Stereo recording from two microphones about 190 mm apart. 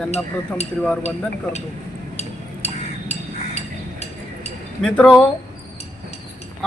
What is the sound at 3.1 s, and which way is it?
Chink, 35° left (ahead or behind).